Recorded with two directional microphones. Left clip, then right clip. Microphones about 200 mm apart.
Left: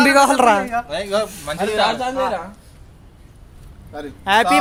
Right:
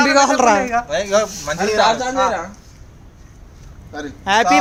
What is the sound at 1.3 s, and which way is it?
Speech, centre (ahead or behind).